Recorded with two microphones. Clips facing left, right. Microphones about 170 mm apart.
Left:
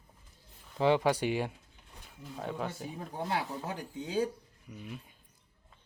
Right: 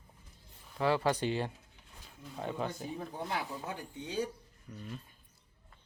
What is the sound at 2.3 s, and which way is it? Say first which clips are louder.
Speech: even; centre (ahead or behind).